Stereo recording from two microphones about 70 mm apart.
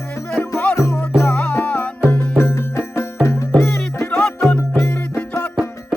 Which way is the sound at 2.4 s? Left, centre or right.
Left.